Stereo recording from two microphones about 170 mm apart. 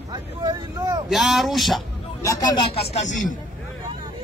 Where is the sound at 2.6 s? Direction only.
35° left (ahead or behind).